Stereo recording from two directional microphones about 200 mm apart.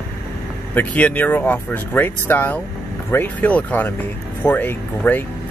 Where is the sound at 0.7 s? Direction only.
10° left (ahead or behind).